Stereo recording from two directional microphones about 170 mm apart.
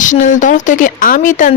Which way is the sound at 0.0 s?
45° left (ahead or behind).